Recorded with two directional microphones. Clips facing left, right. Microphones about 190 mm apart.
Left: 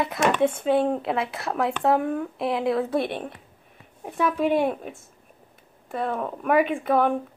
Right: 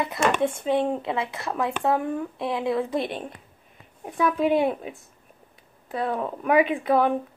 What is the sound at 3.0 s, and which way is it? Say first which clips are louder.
Speech: left 2 dB; 55° left (ahead or behind).